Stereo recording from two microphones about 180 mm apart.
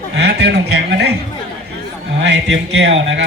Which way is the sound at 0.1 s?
70° right (ahead or behind).